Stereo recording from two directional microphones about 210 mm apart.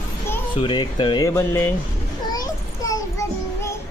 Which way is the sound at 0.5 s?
25° left (ahead or behind).